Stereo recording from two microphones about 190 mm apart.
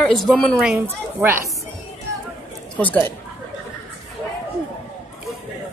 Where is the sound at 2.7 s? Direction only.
10° left (ahead or behind).